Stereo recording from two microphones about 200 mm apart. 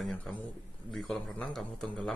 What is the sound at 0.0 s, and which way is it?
A man's voice, 5° left (ahead or behind).